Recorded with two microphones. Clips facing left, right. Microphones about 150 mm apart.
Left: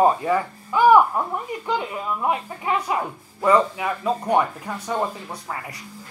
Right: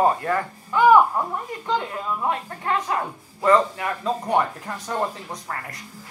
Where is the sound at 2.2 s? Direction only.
10° left (ahead or behind).